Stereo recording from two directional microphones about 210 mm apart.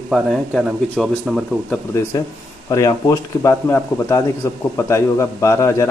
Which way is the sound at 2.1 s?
15° left (ahead or behind).